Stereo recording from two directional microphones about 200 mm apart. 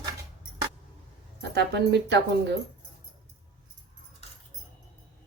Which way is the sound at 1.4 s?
60° right (ahead or behind).